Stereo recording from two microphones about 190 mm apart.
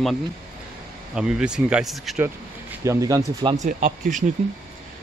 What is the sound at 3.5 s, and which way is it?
Speech, 45° right (ahead or behind).